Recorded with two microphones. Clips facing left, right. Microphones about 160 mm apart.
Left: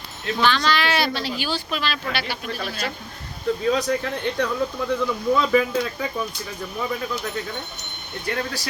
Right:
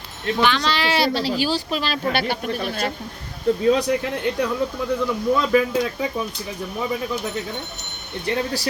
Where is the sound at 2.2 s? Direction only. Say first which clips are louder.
Right 5 dB; 50° right (ahead or behind).